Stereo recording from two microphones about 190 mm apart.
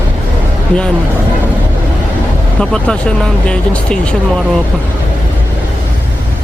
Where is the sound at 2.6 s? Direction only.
5° left (ahead or behind).